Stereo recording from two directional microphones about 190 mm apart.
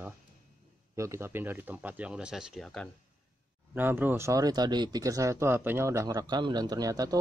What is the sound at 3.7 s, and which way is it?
Speech, 10° right (ahead or behind).